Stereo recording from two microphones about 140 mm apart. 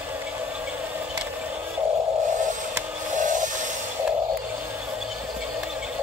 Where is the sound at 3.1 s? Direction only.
65° right (ahead or behind).